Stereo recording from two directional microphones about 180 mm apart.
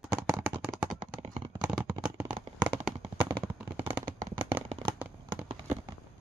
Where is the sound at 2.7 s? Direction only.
30° right (ahead or behind).